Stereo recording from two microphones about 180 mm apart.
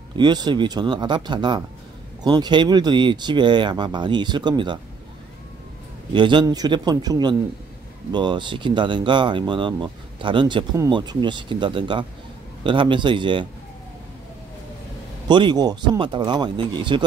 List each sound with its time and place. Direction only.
0.1 s speech: 25° right (ahead or behind)
6.1 s speech: 25° right (ahead or behind)
15.2 s speech: 25° right (ahead or behind)